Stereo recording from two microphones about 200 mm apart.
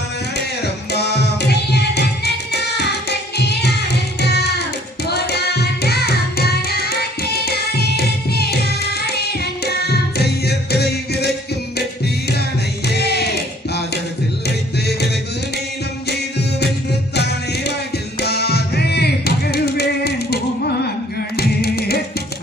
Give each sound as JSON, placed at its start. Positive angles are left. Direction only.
{"t": 0.9, "sound": "music", "side_deg": 55}
{"t": 12.8, "sound": "music", "side_deg": 55}
{"t": 17.2, "sound": "music", "side_deg": 55}